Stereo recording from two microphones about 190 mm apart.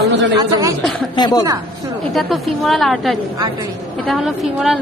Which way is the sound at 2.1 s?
Centre (ahead or behind).